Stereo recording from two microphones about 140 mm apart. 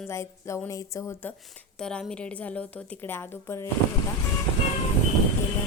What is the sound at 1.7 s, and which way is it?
A woman's voice, 5° left (ahead or behind).